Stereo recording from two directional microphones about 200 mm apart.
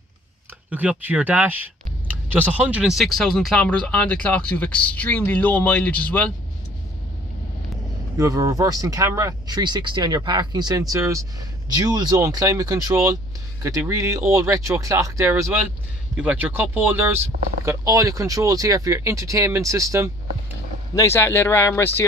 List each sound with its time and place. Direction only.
0.7 s speech: 5° right (ahead or behind)
8.2 s speech: 15° right (ahead or behind)
20.9 s speech: 15° left (ahead or behind)